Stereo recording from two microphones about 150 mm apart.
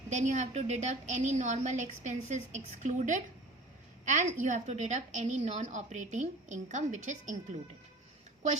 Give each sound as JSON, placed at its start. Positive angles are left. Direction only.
{"t": 0.1, "sound": "a woman's voice", "side_deg": -50}